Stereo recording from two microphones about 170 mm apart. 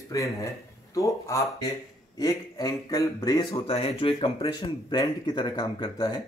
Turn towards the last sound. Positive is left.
turn(degrees=25)  # may be behind; listen again after turning